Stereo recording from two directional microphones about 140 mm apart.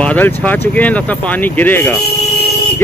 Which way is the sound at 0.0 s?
10° left (ahead or behind).